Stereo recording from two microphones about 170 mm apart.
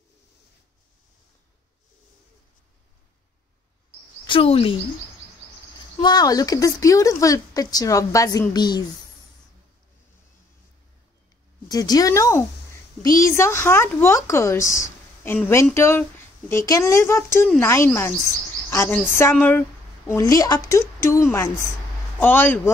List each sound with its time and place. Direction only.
4.2 s speech: 30° left (ahead or behind)
5.9 s speech: 25° left (ahead or behind)
11.7 s speech: 20° left (ahead or behind)
18.7 s a sound: 15° left (ahead or behind)
19.3 s speech: 10° left (ahead or behind)
20.1 s speech: 20° left (ahead or behind)